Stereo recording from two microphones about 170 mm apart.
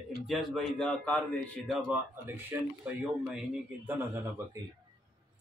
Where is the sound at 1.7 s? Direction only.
5° right (ahead or behind).